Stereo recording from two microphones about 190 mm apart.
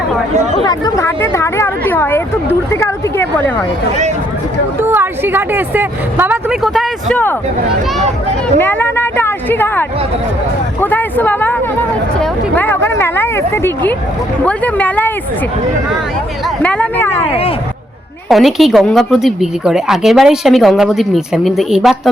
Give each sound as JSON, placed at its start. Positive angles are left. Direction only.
{"t": 0.5, "sound": "a sound", "side_deg": 20}
{"t": 4.8, "sound": "speech", "side_deg": -10}
{"t": 8.5, "sound": "speech", "side_deg": 10}
{"t": 10.8, "sound": "a sound", "side_deg": 10}
{"t": 14.4, "sound": "speech", "side_deg": 10}
{"t": 16.6, "sound": "speech", "side_deg": 10}
{"t": 17.2, "sound": "speech", "side_deg": 30}
{"t": 18.3, "sound": "speech", "side_deg": 0}